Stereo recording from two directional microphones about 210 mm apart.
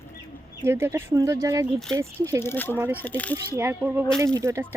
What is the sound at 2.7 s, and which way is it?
Speech, 10° right (ahead or behind).